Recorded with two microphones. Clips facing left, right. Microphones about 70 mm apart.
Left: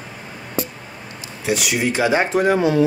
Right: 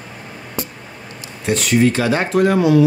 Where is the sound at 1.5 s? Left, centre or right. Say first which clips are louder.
Right 5 dB; centre; by 2.9 s left.